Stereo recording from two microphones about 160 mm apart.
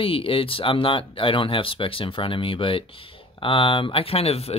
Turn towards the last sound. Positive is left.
turn(degrees=40)  # may be behind; listen again after turning